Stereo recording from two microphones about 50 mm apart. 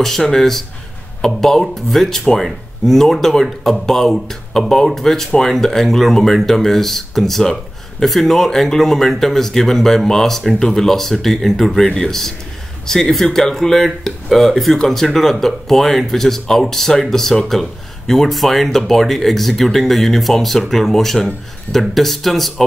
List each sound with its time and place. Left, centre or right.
0.2 s speech: centre